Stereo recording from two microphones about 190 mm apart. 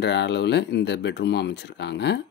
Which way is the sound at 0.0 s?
65° left (ahead or behind).